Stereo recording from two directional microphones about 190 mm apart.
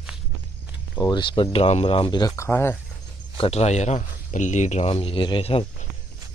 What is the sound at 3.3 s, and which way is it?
Speech, 30° left (ahead or behind).